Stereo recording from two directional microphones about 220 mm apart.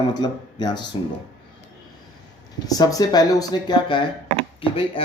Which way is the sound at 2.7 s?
15° left (ahead or behind).